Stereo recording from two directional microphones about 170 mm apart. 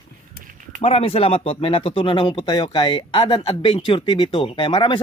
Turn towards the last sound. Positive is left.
turn(degrees=30)  # may be behind; listen again after turning